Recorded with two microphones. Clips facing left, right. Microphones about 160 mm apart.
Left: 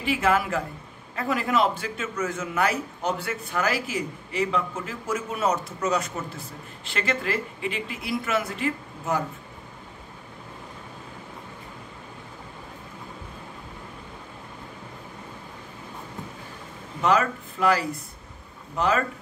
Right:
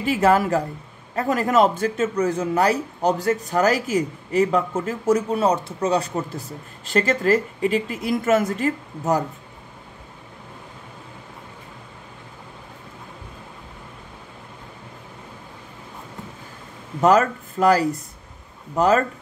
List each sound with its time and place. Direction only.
0.0 s a man's voice: 40° right (ahead or behind)
17.0 s a man's voice: 45° right (ahead or behind)